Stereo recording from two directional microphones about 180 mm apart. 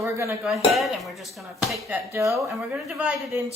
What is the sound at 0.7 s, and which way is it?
Speech, centre (ahead or behind).